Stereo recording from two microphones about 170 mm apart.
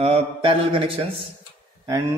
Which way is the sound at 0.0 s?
30° right (ahead or behind).